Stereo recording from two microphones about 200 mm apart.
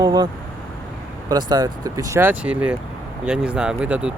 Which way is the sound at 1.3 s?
20° right (ahead or behind).